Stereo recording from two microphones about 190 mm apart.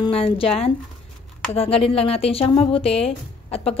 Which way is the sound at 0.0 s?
30° left (ahead or behind).